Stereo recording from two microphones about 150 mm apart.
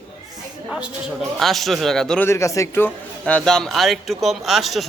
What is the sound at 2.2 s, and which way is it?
Speech, 20° left (ahead or behind).